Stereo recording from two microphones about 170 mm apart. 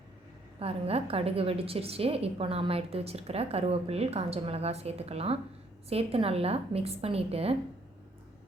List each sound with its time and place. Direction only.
0.6 s a woman's voice: 35° right (ahead or behind)